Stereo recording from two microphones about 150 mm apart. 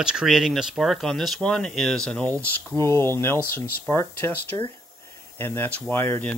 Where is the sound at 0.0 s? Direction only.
5° right (ahead or behind).